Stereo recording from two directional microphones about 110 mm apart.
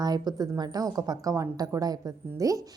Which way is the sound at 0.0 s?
35° right (ahead or behind).